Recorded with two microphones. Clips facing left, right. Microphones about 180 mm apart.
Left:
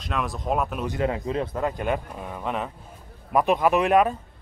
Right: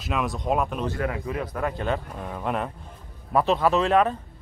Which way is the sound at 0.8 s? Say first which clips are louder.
Left 2 dB; 20° left (ahead or behind).